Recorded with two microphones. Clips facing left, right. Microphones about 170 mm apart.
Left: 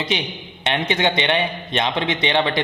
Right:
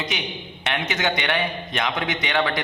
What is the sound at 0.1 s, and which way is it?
A man's voice, 30° left (ahead or behind).